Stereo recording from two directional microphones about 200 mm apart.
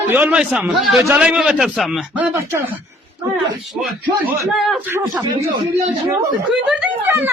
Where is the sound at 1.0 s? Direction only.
15° right (ahead or behind).